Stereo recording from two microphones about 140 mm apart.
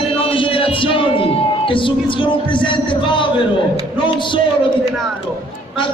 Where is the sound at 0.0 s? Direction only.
40° left (ahead or behind).